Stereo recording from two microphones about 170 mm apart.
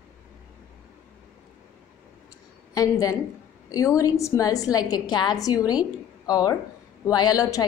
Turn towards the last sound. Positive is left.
turn(degrees=20)  # may be behind; listen again after turning